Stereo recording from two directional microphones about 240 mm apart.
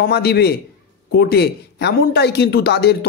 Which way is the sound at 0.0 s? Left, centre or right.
Left.